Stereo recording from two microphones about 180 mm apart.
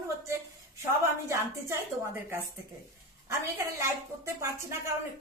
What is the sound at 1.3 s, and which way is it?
A woman's voice, 15° right (ahead or behind).